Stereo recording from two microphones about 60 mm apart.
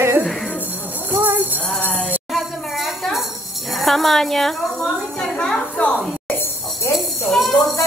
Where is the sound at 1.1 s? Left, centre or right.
Right.